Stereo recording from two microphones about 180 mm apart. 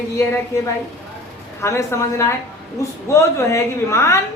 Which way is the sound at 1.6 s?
15° left (ahead or behind).